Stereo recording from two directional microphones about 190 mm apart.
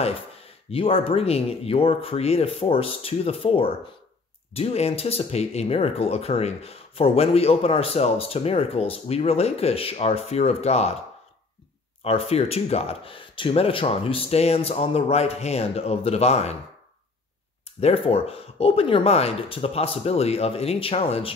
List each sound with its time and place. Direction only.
0.7 s speech: 30° left (ahead or behind)
12.0 s speech: 30° left (ahead or behind)
17.7 s speech: 30° left (ahead or behind)